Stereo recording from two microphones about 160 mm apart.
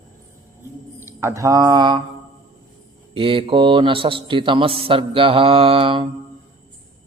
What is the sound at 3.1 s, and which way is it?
Speech, 35° right (ahead or behind).